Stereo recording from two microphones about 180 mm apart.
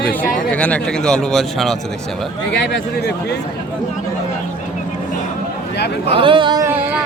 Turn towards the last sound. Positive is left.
turn(degrees=-25)  # may be behind; listen again after turning